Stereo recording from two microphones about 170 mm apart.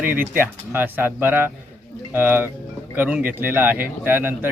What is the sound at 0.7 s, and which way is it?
Speech, 10° right (ahead or behind).